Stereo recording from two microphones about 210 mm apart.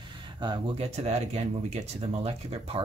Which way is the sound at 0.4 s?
25° right (ahead or behind).